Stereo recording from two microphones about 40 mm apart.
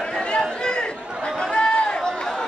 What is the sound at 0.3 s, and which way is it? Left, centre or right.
Chatter, left.